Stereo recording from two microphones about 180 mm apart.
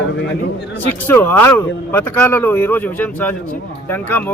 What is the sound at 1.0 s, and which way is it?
Speech, 10° left (ahead or behind).